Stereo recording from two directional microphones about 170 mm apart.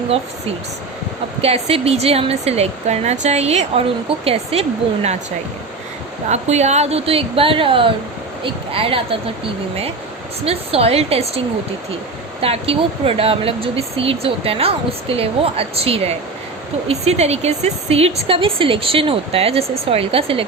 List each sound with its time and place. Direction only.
1.4 s speech: 35° right (ahead or behind)
6.2 s speech: 40° right (ahead or behind)
10.4 s speech: 35° right (ahead or behind)
12.4 s speech: 35° right (ahead or behind)